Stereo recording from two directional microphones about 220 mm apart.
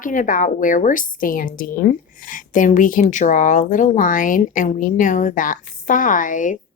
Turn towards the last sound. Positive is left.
turn(degrees=35)  # may be behind; listen again after turning